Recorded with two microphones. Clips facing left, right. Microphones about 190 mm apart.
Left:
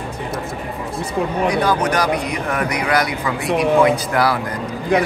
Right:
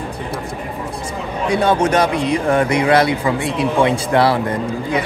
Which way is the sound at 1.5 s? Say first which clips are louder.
Right 8 dB; 25° right (ahead or behind).